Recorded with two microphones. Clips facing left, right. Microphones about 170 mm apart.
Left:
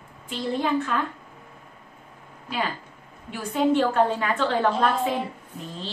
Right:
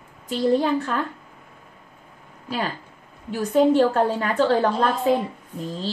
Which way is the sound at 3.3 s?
40° right (ahead or behind).